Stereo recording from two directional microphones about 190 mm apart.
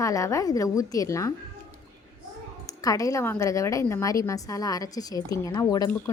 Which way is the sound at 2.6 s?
20° left (ahead or behind).